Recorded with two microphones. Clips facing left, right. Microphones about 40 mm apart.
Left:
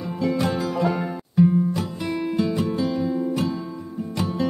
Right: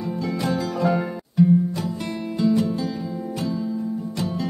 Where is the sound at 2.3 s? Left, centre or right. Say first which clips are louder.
Right 5 dB; left.